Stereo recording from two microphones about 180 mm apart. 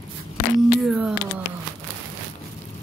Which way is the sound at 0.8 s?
Centre (ahead or behind).